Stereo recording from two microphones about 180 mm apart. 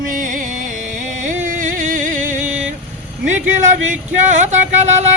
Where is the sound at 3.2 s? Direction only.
45° right (ahead or behind).